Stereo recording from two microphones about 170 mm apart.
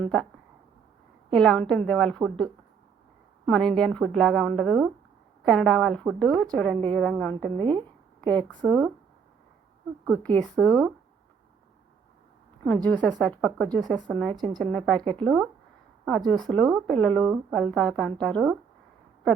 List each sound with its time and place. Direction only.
0.0 s a woman's voice: 5° left (ahead or behind)
1.3 s a woman's voice: centre (ahead or behind)
7.6 s a sound: 25° right (ahead or behind)
8.3 s a woman's voice: 10° left (ahead or behind)
10.1 s a woman's voice: 10° left (ahead or behind)
12.6 s a woman's voice: 10° left (ahead or behind)
14.3 s a woman's voice: 25° right (ahead or behind)
14.6 s a woman's voice: 5° left (ahead or behind)